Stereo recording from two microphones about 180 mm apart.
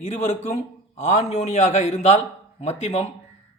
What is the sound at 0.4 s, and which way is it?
Speech, 40° left (ahead or behind).